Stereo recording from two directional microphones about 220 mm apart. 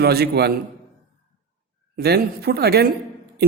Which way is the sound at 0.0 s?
45° right (ahead or behind).